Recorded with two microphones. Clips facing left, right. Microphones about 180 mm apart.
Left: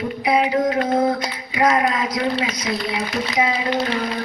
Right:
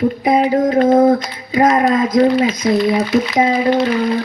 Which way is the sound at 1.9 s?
50° right (ahead or behind).